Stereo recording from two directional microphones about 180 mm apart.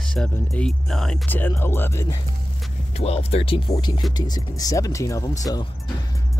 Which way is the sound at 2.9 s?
35° left (ahead or behind).